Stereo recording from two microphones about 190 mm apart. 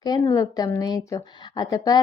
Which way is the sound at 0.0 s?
20° left (ahead or behind).